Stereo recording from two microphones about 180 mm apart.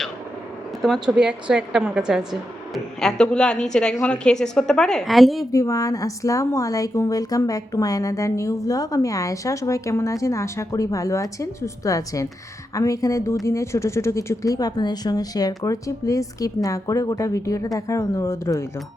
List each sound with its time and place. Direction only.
0.8 s a woman's voice: centre (ahead or behind)
5.5 s a woman's voice: 20° left (ahead or behind)